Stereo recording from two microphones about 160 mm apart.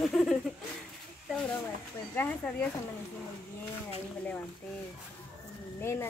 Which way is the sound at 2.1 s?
10° left (ahead or behind).